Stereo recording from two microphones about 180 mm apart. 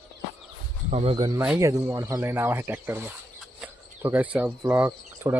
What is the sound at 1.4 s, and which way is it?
Speech, 15° right (ahead or behind).